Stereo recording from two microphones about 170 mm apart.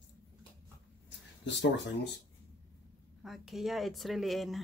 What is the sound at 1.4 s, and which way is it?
Speech, 90° left.